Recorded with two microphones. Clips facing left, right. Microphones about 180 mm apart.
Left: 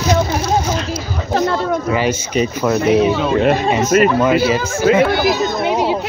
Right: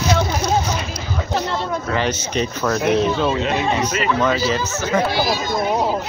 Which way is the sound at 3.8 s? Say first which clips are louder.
Left 9 dB; 45° left (ahead or behind).